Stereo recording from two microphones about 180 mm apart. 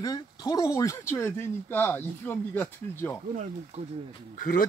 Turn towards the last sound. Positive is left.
turn(degrees=50)  # may be behind; listen again after turning